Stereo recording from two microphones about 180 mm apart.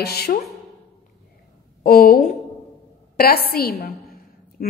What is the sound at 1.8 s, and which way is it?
A woman's voice, 55° left (ahead or behind).